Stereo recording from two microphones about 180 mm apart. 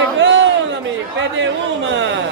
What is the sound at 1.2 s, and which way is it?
Speech, 90° right.